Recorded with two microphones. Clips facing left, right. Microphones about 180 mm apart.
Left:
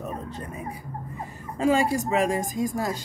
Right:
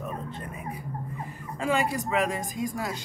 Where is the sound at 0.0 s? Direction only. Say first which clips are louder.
Left 2 dB; 40° left (ahead or behind).